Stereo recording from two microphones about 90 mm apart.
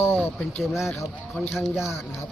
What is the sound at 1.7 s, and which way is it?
Speech, 35° left (ahead or behind).